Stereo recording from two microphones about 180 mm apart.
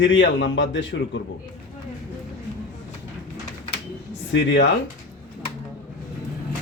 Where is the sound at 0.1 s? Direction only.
90° left.